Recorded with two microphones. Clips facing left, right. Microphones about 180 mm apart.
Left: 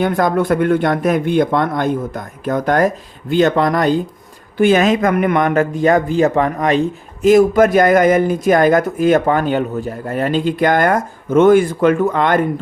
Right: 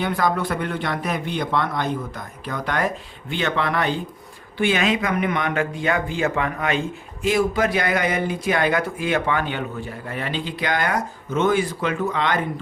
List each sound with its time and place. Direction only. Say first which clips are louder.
0.0 s a man's voice: left 7 dB; 50° left (ahead or behind)